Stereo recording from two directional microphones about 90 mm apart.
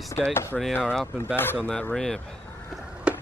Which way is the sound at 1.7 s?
10° left (ahead or behind).